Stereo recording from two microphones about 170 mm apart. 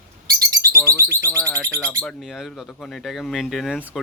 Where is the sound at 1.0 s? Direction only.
15° right (ahead or behind).